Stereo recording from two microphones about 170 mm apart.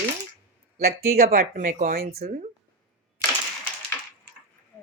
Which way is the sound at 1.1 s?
55° right (ahead or behind).